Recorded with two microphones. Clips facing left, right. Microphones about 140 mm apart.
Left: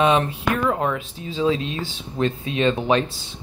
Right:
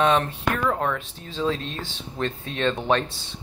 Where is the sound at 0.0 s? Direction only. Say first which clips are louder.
Left 2 dB; 5° left (ahead or behind).